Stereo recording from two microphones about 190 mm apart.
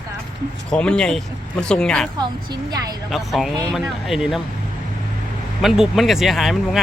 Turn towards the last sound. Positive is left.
turn(degrees=0)  # may be behind; listen again after turning